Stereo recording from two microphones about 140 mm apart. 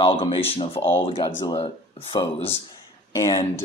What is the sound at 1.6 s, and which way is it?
Speech, 45° left (ahead or behind).